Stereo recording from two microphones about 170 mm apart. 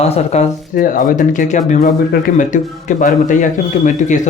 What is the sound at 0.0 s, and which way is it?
A man's voice, 40° left (ahead or behind).